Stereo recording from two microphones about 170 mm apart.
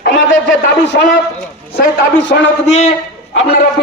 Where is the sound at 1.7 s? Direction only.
85° left.